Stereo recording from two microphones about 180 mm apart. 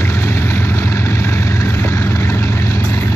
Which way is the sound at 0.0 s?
15° left (ahead or behind).